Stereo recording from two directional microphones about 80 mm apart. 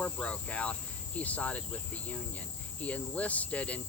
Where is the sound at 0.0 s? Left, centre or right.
Centre.